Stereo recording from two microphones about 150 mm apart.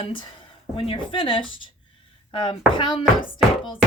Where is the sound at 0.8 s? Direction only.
35° left (ahead or behind).